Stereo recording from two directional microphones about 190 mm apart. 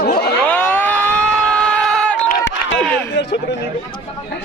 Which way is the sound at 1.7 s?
5° left (ahead or behind).